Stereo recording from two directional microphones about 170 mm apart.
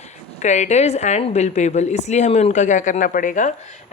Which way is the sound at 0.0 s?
40° left (ahead or behind).